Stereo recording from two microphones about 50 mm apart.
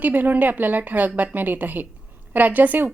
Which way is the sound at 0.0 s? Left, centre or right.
Right.